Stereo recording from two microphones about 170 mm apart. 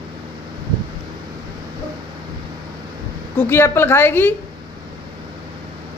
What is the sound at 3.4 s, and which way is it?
Speech, 15° left (ahead or behind).